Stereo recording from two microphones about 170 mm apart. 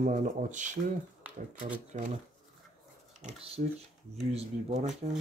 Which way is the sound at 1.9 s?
45° right (ahead or behind).